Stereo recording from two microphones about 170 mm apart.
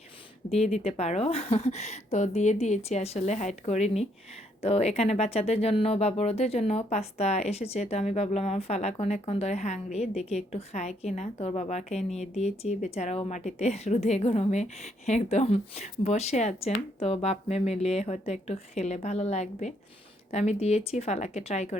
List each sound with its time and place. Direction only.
0.5 s speech: 40° left (ahead or behind)